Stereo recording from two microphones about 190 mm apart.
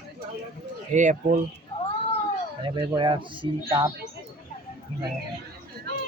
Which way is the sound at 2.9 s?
25° right (ahead or behind).